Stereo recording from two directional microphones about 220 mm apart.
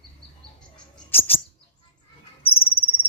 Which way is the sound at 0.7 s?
10° left (ahead or behind).